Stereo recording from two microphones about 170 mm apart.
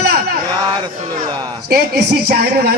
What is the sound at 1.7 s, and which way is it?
Speech, 65° right (ahead or behind).